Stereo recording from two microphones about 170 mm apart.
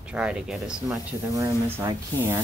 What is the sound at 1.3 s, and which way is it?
Speech, 15° right (ahead or behind).